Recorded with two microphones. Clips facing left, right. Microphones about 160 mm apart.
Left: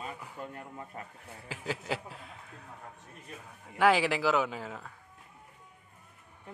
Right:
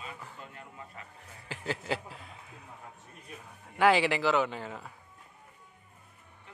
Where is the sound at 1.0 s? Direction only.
40° left (ahead or behind).